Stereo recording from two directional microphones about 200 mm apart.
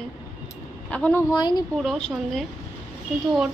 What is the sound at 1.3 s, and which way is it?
Speech, 20° left (ahead or behind).